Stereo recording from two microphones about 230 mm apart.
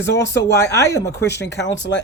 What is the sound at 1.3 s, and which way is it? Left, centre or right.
Speech, left.